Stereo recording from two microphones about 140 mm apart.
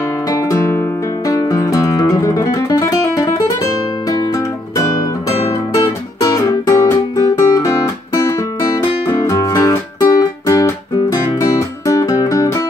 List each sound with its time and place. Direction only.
0.3 s guitar: 20° left (ahead or behind)
1.3 s music: 25° left (ahead or behind)
5.8 s music: 30° left (ahead or behind)
9.2 s music: 25° left (ahead or behind)
11.9 s music: 25° left (ahead or behind)